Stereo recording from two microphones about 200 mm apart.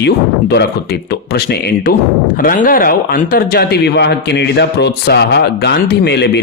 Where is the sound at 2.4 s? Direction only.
45° left (ahead or behind).